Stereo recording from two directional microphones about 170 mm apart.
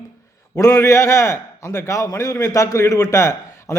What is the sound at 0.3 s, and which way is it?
A man's voice, 20° left (ahead or behind).